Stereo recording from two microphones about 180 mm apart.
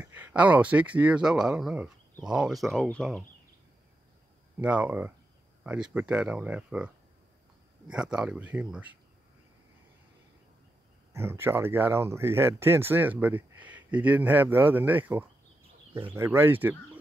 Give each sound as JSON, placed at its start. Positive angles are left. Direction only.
{"t": 0.0, "sound": "speech", "side_deg": -10}
{"t": 4.6, "sound": "speech", "side_deg": -5}
{"t": 7.9, "sound": "speech", "side_deg": -5}
{"t": 11.1, "sound": "speech", "side_deg": -15}
{"t": 15.9, "sound": "speech", "side_deg": -30}
{"t": 16.2, "sound": "speech", "side_deg": -15}